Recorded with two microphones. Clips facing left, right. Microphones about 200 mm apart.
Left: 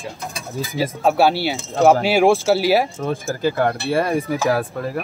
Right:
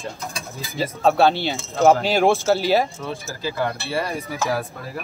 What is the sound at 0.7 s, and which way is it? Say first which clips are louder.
Speech: even; 10° left (ahead or behind).